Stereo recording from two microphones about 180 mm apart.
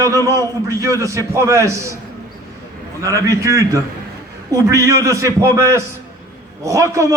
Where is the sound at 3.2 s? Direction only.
15° right (ahead or behind).